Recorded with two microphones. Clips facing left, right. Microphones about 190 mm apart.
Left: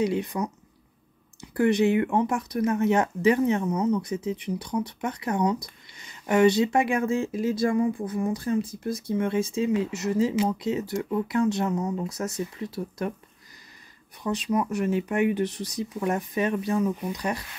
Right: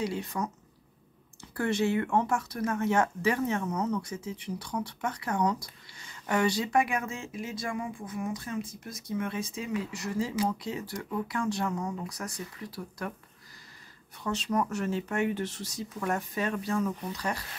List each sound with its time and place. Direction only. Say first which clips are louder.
0.0 s speech: left 6 dB; 20° left (ahead or behind)
14.2 s speech: left 4 dB; 15° left (ahead or behind)